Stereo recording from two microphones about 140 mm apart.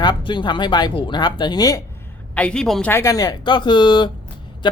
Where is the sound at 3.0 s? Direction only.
25° left (ahead or behind).